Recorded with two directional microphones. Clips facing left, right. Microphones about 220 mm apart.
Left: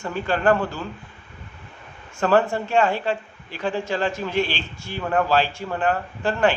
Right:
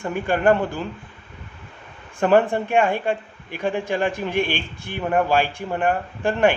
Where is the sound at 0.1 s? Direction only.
15° right (ahead or behind).